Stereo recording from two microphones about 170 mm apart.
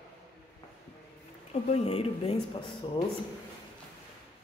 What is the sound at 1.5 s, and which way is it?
Speech, 35° left (ahead or behind).